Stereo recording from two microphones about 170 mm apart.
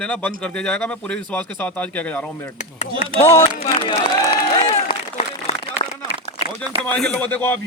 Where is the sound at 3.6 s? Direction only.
30° left (ahead or behind).